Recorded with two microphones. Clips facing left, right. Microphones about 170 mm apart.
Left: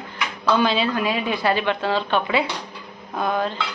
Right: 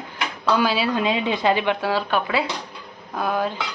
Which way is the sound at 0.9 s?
20° right (ahead or behind).